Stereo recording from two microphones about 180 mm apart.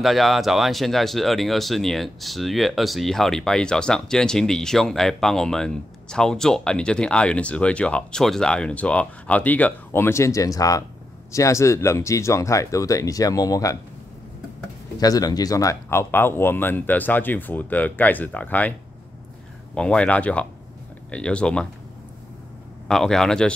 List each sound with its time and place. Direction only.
0.0 s speech: centre (ahead or behind); by 13.7 s 20° left (ahead or behind)
15.0 s speech: 20° left (ahead or behind)
22.8 s speech: 5° left (ahead or behind)